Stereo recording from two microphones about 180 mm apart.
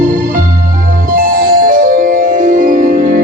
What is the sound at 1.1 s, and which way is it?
Music, 50° right (ahead or behind).